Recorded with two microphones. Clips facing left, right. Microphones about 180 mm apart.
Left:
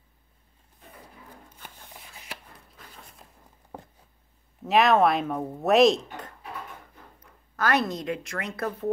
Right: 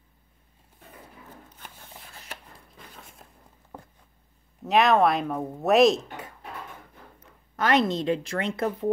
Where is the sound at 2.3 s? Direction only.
Centre (ahead or behind).